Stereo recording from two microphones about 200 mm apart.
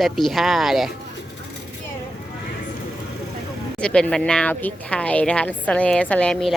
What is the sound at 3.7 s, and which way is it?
Speech, 5° left (ahead or behind).